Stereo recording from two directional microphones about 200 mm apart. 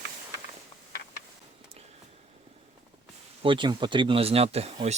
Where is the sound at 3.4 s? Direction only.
25° right (ahead or behind).